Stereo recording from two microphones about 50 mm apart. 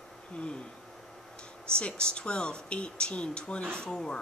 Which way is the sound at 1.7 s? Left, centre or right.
Centre.